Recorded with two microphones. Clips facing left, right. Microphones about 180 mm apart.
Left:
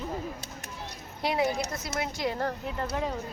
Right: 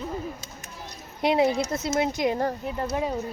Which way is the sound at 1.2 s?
25° right (ahead or behind).